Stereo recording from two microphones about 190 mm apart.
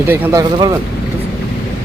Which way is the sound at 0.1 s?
15° right (ahead or behind).